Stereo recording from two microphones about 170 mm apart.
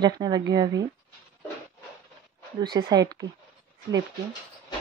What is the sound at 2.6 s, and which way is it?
Speech, 25° right (ahead or behind).